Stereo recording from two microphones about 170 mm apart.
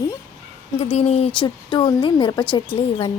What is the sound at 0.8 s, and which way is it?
Speech, 40° left (ahead or behind).